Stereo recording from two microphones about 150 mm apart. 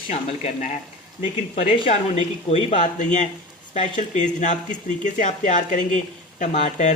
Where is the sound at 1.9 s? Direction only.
45° left (ahead or behind).